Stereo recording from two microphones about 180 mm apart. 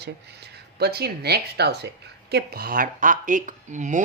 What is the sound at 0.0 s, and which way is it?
Speech, 65° right (ahead or behind).